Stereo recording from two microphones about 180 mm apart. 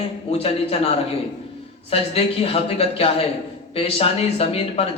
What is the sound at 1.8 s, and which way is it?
Speech, 35° left (ahead or behind).